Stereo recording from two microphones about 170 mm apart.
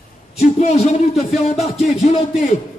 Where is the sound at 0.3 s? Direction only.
40° left (ahead or behind).